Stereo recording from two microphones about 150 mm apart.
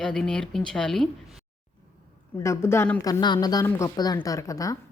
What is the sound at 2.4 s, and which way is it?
Speech, 20° left (ahead or behind).